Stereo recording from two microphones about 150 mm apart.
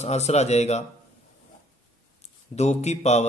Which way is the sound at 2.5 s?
50° left (ahead or behind).